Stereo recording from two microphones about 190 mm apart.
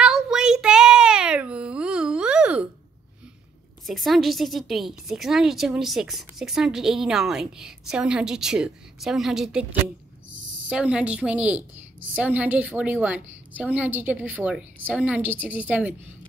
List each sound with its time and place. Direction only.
0.0 s child singing: 5° right (ahead or behind)
3.8 s a woman's voice: centre (ahead or behind)
10.3 s a sound: 80° right
10.7 s a woman's voice: 5° right (ahead or behind)